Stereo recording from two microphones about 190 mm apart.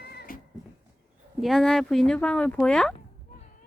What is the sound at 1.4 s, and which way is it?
Speech, centre (ahead or behind).